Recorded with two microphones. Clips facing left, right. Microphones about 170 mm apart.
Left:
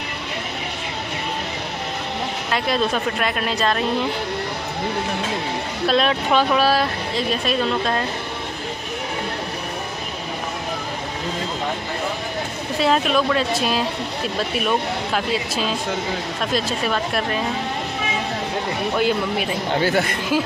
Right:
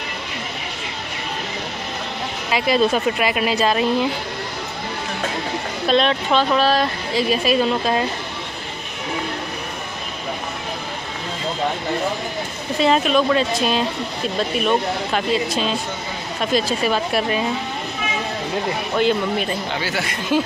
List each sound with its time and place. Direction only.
2.5 s speech: 5° right (ahead or behind)
5.9 s speech: 5° left (ahead or behind)
7.2 s speech: 5° right (ahead or behind)
12.7 s speech: centre (ahead or behind)
18.9 s speech: 5° left (ahead or behind)
19.7 s a woman's voice: 50° left (ahead or behind)